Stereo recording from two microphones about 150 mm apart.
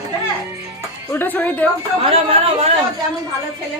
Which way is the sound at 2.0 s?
40° right (ahead or behind).